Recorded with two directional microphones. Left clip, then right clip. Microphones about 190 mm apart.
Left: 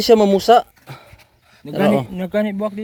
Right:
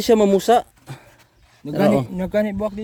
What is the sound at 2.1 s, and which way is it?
Speech, 40° right (ahead or behind).